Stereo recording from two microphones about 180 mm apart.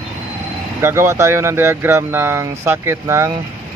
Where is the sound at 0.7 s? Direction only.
15° right (ahead or behind).